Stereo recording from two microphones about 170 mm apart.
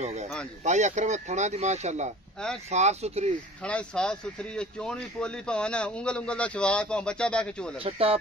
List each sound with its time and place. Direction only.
0.0 s speech: 40° right (ahead or behind)
2.4 s speech: 5° left (ahead or behind)
2.7 s speech: 40° right (ahead or behind)
3.6 s speech: 5° left (ahead or behind)
7.8 s speech: 35° right (ahead or behind)